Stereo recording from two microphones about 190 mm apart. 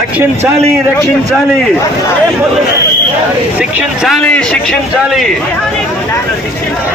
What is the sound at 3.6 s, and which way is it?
Speech, 5° right (ahead or behind).